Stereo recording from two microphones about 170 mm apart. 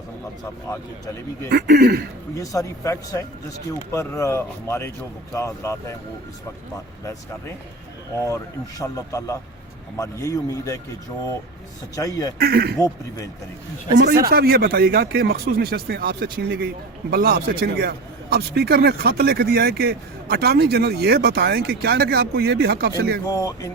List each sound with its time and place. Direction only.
1.5 s a man's voice: 70° right (ahead or behind)
2.3 s a man's voice: 20° left (ahead or behind)
7.0 s speech: 15° left (ahead or behind)
8.8 s a man's voice: 20° left (ahead or behind)
11.9 s a man's voice: 20° left (ahead or behind)
12.4 s a man's voice: 70° right (ahead or behind)
14.3 s a man's voice: 60° right (ahead or behind)
23.2 s a man's voice: 20° left (ahead or behind)